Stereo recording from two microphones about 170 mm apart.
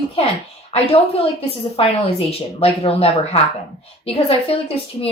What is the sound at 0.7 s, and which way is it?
Speech, 35° left (ahead or behind).